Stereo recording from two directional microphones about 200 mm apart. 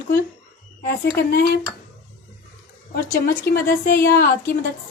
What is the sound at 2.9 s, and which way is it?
A woman's voice, 45° left (ahead or behind).